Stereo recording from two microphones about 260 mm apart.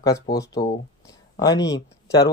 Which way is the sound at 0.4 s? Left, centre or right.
Centre.